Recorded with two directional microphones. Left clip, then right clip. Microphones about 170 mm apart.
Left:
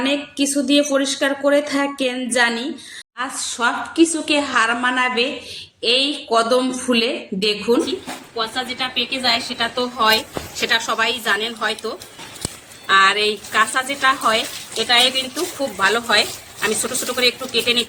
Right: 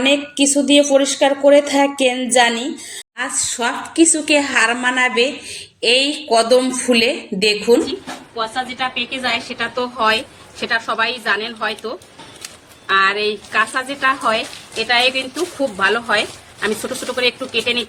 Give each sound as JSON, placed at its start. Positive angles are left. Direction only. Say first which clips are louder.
{"t": 0.0, "sound": "speech", "louder": "right 5 dB", "side_deg": -10}
{"t": 8.4, "sound": "a woman's voice", "louder": "right 2 dB", "side_deg": 0}
{"t": 9.7, "sound": "speech", "louder": "even", "side_deg": -25}
{"t": 15.8, "sound": "a woman's voice", "louder": "left 1 dB", "side_deg": -45}